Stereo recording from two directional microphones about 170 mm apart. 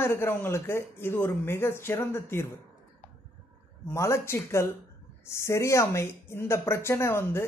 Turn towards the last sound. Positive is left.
turn(degrees=15)  # may be behind; listen again after turning